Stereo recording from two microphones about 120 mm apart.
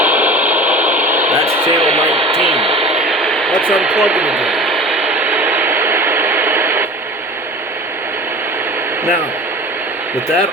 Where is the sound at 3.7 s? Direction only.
5° right (ahead or behind).